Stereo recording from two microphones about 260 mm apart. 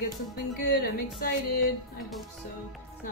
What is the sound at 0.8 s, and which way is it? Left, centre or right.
Speech, left.